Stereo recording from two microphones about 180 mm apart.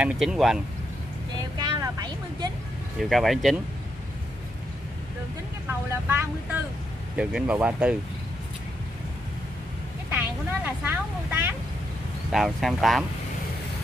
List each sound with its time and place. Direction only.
0.0 s speech: 5° right (ahead or behind)
1.6 s vehicle: 25° right (ahead or behind)
3.0 s speech: centre (ahead or behind)
5.7 s speech: 10° right (ahead or behind)
10.1 s speech: 10° right (ahead or behind)
12.3 s speech: centre (ahead or behind)